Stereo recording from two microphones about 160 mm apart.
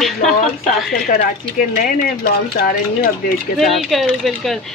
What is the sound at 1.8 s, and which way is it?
Speech, 55° left (ahead or behind).